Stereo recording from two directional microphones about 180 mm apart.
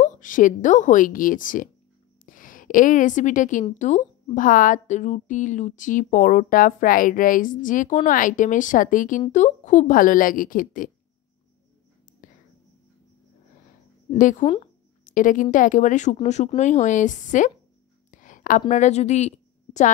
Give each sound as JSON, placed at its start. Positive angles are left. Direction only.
{"t": 0.0, "sound": "a woman's voice", "side_deg": 45}
{"t": 12.2, "sound": "whispering", "side_deg": 45}
{"t": 14.1, "sound": "a woman's voice", "side_deg": 45}
{"t": 18.1, "sound": "a sound", "side_deg": 45}